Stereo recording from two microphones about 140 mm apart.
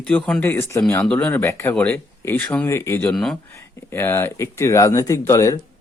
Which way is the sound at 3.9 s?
15° left (ahead or behind).